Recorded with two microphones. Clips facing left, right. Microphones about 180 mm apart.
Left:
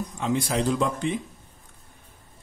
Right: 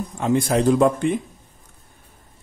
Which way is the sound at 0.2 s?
50° right (ahead or behind).